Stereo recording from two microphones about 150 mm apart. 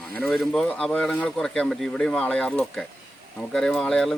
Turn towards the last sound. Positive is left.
turn(degrees=5)  # may be behind; listen again after turning